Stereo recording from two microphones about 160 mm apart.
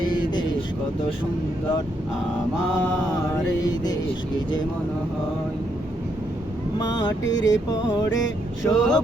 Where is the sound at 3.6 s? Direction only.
25° left (ahead or behind).